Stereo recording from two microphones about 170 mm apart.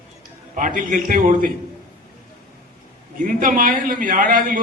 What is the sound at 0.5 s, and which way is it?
Speech, 50° right (ahead or behind).